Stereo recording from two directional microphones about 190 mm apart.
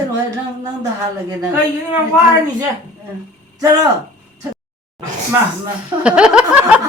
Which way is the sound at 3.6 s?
20° right (ahead or behind).